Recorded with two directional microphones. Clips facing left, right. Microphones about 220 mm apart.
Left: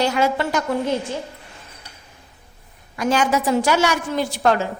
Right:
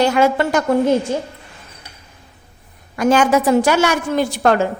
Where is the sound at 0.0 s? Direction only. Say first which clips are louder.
Right 5 dB; 55° right (ahead or behind).